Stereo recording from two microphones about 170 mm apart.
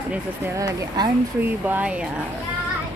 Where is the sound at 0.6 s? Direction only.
20° right (ahead or behind).